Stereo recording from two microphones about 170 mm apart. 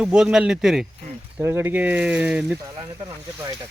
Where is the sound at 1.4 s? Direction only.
15° right (ahead or behind).